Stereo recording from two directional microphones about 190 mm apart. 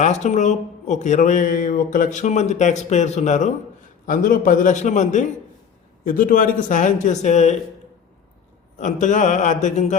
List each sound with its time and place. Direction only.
0.0 s speech: 40° left (ahead or behind)
8.8 s speech: 40° left (ahead or behind)